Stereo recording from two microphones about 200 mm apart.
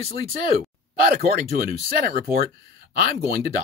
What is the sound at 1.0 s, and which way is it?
Speech, 45° right (ahead or behind).